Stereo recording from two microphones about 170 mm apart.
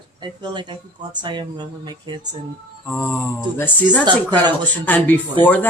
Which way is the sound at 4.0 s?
25° right (ahead or behind).